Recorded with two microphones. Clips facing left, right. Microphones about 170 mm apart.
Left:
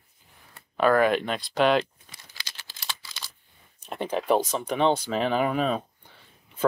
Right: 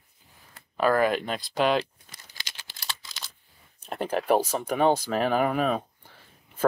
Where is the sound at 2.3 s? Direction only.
20° right (ahead or behind).